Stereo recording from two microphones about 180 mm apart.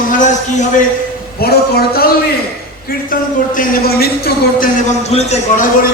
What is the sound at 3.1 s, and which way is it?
Speech, 50° left (ahead or behind).